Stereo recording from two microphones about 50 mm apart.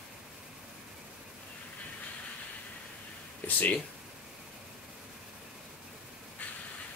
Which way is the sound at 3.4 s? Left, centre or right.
Left.